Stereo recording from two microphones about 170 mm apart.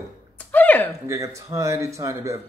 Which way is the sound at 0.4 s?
10° left (ahead or behind).